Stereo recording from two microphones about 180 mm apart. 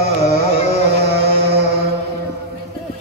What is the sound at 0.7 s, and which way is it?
Music, 65° right (ahead or behind).